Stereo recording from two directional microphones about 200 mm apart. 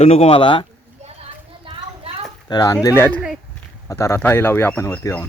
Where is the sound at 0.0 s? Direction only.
30° left (ahead or behind).